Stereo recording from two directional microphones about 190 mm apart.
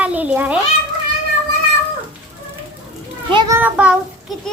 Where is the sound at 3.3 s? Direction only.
25° right (ahead or behind).